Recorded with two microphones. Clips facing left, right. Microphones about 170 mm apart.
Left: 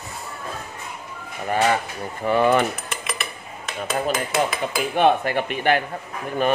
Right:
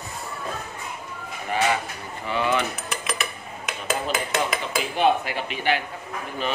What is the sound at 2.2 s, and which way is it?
Speech, 50° left (ahead or behind).